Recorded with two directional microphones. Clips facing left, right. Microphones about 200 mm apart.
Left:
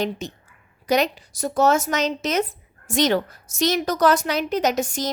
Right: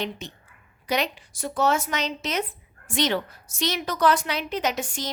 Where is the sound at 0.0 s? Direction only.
40° left (ahead or behind).